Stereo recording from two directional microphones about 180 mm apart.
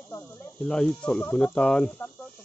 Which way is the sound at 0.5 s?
5° left (ahead or behind).